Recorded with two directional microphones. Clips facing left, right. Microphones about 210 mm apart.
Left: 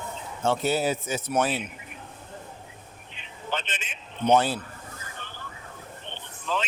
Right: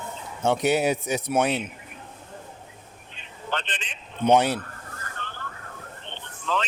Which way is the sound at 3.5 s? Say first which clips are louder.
Right 1 dB; 5° left (ahead or behind).